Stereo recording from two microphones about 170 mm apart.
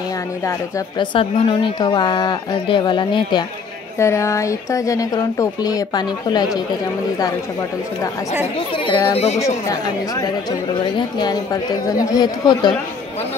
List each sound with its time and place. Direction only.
0.5 s speech: 25° left (ahead or behind)
4.0 s speech: 15° left (ahead or behind)
8.5 s speech: 30° left (ahead or behind)
9.4 s speech: 20° left (ahead or behind)